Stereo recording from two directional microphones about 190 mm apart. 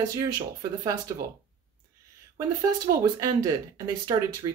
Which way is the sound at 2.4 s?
15° right (ahead or behind).